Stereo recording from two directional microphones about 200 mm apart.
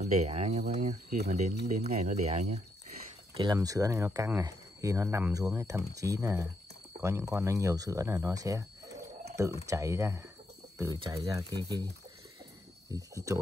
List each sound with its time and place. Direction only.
0.0 s speech: 35° right (ahead or behind)
3.3 s speech: 20° right (ahead or behind)
12.9 s speech: 15° right (ahead or behind)